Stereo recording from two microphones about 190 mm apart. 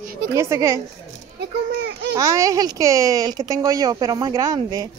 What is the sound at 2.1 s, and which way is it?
Speech, 15° right (ahead or behind).